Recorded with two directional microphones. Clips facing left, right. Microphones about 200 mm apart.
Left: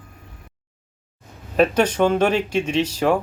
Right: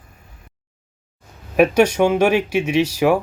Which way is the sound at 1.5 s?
10° right (ahead or behind).